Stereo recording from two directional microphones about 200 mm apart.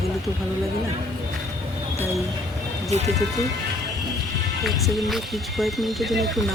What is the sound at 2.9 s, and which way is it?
Speech, 35° right (ahead or behind).